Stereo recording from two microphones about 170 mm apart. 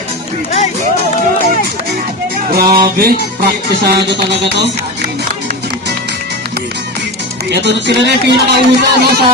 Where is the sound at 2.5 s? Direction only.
65° right (ahead or behind).